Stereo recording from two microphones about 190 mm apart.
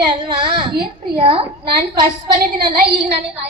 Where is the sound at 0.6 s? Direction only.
25° right (ahead or behind).